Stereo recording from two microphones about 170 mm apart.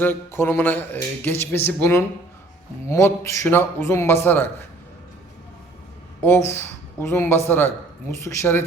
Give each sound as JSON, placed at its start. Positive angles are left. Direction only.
{"t": 0.0, "sound": "speech", "side_deg": 10}
{"t": 6.2, "sound": "speech", "side_deg": 15}